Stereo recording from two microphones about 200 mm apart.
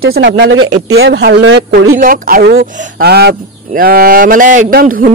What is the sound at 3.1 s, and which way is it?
Speech, 50° right (ahead or behind).